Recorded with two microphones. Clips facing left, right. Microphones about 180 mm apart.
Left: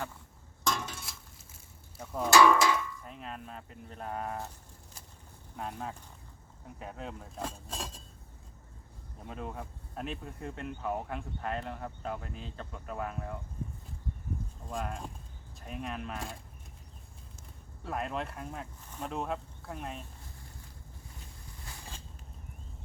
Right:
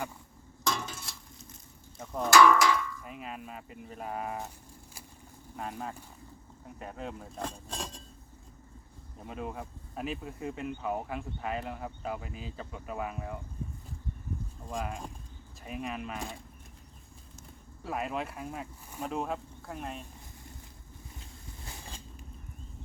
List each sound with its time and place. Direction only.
0.6 s a sound: centre (ahead or behind)
2.0 s music: 5° left (ahead or behind)
2.3 s cowbell: 25° left (ahead or behind)
3.0 s speech: 5° right (ahead or behind)
5.5 s speech: centre (ahead or behind)
9.2 s speech: 5° right (ahead or behind)
14.7 s speech: centre (ahead or behind)
17.8 s speech: 5° right (ahead or behind)